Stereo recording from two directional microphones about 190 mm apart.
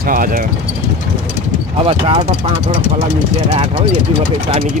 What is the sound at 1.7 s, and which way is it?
Speech, 30° right (ahead or behind).